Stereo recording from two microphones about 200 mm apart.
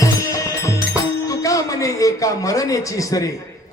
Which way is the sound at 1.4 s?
15° left (ahead or behind).